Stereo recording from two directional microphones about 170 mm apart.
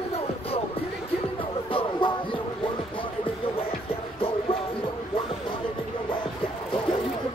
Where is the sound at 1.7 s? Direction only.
30° left (ahead or behind).